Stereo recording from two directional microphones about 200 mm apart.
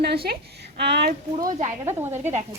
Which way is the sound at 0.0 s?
55° right (ahead or behind).